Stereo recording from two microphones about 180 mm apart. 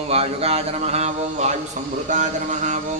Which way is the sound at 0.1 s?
35° right (ahead or behind).